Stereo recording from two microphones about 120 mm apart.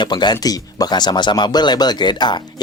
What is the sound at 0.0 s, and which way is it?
Speech, 40° left (ahead or behind).